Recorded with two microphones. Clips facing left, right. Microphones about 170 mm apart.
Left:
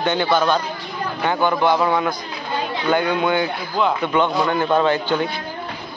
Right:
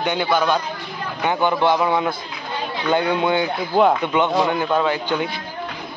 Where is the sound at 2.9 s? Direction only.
25° right (ahead or behind).